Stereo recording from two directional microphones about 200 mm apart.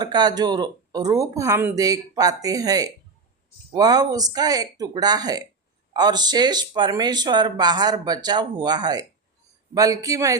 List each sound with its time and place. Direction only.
0.0 s speech: 20° right (ahead or behind)